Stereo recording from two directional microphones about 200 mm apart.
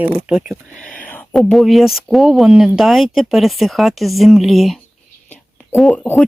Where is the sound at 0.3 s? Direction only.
5° right (ahead or behind).